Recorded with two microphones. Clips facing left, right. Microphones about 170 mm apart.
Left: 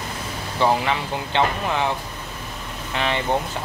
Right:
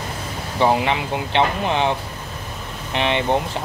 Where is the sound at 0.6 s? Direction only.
20° right (ahead or behind).